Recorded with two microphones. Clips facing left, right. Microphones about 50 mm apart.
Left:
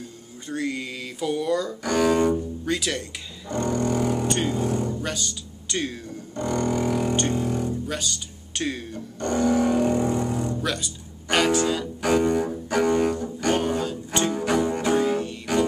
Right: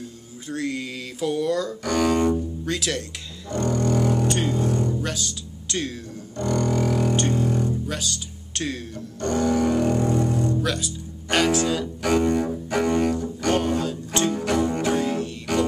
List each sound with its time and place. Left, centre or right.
0.5 s music: centre
3.4 s speech: centre
6.3 s music: centre